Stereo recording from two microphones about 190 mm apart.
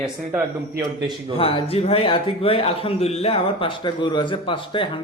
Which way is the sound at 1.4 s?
30° left (ahead or behind).